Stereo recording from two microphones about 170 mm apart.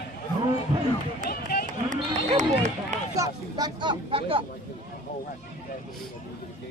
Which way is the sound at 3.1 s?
20° right (ahead or behind).